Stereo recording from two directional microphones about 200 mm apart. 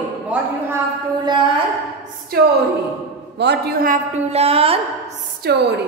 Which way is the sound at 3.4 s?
55° right (ahead or behind).